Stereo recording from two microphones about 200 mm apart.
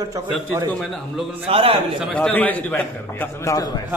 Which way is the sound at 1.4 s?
30° right (ahead or behind).